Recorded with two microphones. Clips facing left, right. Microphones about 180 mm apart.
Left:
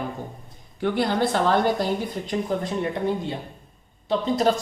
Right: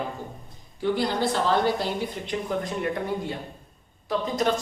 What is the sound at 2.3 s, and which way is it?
A man's voice, 30° left (ahead or behind).